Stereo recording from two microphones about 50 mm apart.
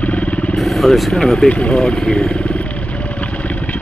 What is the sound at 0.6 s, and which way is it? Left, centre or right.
Speech, centre.